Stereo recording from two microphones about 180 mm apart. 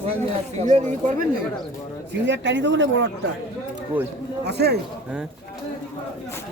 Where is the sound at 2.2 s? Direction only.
85° right.